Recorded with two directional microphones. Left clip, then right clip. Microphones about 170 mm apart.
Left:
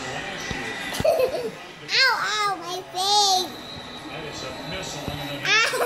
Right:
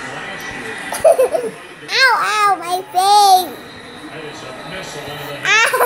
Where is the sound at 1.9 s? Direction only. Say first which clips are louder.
Right 7 dB; 25° right (ahead or behind).